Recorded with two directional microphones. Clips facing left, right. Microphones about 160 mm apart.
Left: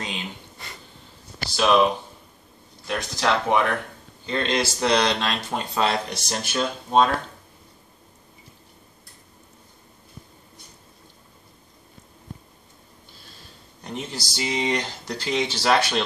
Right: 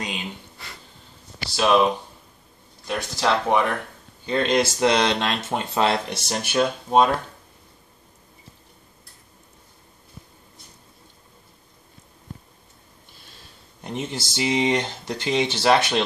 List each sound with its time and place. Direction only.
0.0 s a sound: 10° right (ahead or behind)
2.9 s speech: centre (ahead or behind)
4.6 s speech: 20° right (ahead or behind)
6.2 s speech: 15° right (ahead or behind)
13.8 s speech: 25° right (ahead or behind)